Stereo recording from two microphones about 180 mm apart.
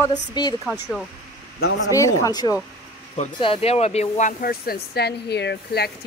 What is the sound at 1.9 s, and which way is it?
Speech, 20° left (ahead or behind).